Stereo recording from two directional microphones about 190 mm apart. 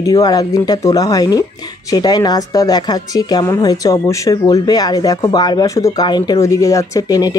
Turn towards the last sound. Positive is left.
turn(degrees=20)  # may be behind; listen again after turning